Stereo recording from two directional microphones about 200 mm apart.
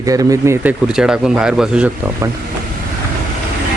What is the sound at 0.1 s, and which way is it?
Speech, 15° right (ahead or behind).